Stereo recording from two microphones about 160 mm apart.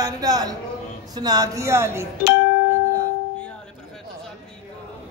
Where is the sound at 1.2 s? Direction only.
25° right (ahead or behind).